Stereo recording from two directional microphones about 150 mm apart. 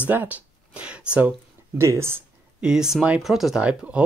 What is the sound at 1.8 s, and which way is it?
Speech, 20° right (ahead or behind).